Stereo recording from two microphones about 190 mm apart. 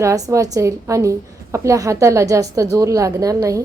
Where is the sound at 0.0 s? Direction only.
15° right (ahead or behind).